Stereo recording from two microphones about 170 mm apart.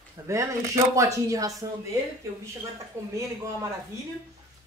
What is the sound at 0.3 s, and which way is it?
Speech, 20° right (ahead or behind).